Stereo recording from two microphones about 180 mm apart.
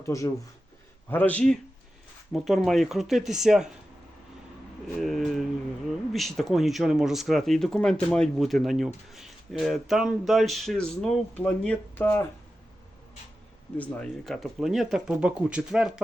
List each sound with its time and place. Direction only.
0.0 s speech: 15° left (ahead or behind); by 3.7 s 5° right (ahead or behind)
4.9 s speech: centre (ahead or behind)
13.7 s speech: 5° left (ahead or behind)